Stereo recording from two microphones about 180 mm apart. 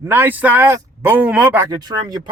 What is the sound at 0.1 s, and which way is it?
Speech, 10° right (ahead or behind).